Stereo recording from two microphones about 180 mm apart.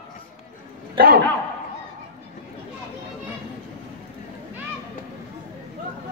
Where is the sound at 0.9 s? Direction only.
60° right (ahead or behind).